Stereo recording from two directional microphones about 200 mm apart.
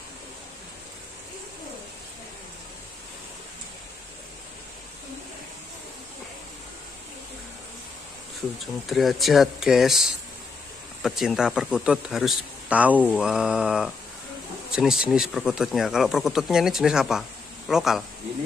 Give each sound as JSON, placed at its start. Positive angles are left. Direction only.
{"t": 8.8, "sound": "speech", "side_deg": 0}